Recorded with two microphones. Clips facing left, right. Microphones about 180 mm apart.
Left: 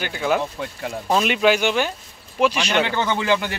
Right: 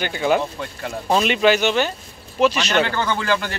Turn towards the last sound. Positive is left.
turn(degrees=15)  # may be behind; listen again after turning